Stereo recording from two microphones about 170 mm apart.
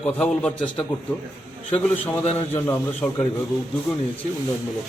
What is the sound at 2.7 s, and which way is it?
Speech, 15° left (ahead or behind).